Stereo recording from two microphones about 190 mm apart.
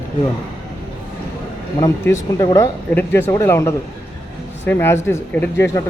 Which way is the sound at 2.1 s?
20° left (ahead or behind).